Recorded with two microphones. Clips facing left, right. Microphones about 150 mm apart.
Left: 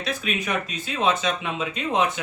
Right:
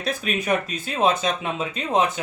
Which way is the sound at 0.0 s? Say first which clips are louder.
Right 2 dB; 45° right (ahead or behind).